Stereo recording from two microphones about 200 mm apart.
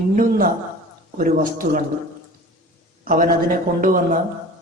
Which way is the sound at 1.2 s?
45° right (ahead or behind).